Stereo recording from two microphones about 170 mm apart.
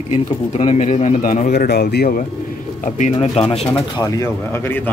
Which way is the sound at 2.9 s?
40° left (ahead or behind).